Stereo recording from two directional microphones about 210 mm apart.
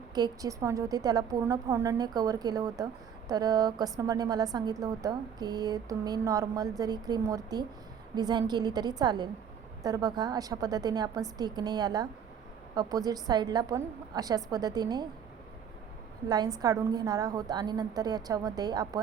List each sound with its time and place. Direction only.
0.1 s a woman's voice: 15° right (ahead or behind)
16.3 s speech: 20° right (ahead or behind)